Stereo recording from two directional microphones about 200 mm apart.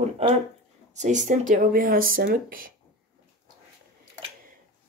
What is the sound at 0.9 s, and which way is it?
Speech, 35° right (ahead or behind).